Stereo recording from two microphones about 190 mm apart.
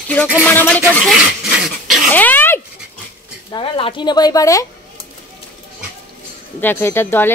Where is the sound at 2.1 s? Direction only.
10° left (ahead or behind).